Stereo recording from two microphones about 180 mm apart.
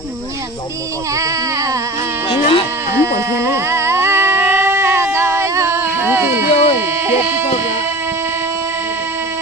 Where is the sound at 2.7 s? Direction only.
15° right (ahead or behind).